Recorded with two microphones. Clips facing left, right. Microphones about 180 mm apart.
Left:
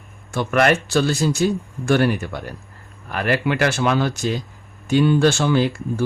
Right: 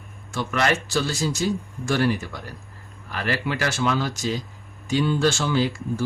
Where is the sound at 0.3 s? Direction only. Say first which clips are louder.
Left 6 dB; 55° left (ahead or behind).